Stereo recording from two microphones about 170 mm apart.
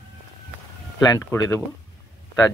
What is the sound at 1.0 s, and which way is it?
Speech, 15° left (ahead or behind).